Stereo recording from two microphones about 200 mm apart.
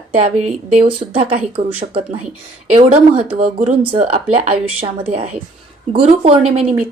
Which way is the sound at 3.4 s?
40° right (ahead or behind).